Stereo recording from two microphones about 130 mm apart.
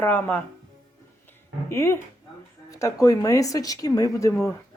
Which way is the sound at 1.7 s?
20° left (ahead or behind).